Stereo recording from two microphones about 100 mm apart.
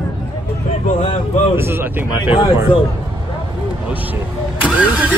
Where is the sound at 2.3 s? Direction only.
60° left (ahead or behind).